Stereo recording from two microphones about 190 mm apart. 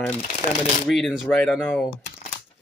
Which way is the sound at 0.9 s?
Centre (ahead or behind).